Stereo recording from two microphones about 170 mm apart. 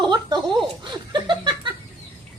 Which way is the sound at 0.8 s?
25° right (ahead or behind).